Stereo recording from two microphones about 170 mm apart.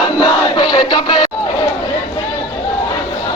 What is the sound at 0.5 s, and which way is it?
Music, 25° left (ahead or behind).